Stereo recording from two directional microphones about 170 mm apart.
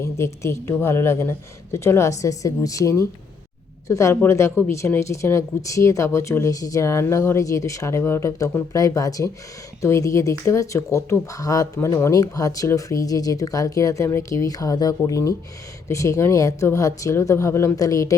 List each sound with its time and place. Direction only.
0.0 s speech: 15° left (ahead or behind)